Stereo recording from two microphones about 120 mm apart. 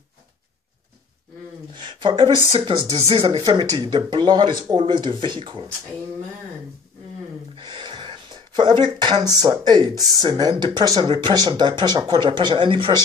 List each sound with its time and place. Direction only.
1.8 s speech: 45° right (ahead or behind)
7.5 s speech: 40° right (ahead or behind)